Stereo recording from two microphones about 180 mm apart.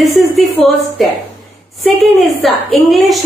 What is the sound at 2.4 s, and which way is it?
Speech, centre (ahead or behind).